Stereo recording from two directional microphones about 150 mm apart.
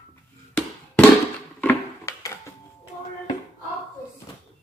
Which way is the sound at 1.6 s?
20° left (ahead or behind).